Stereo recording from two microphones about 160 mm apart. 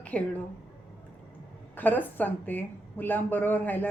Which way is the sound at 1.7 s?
10° left (ahead or behind).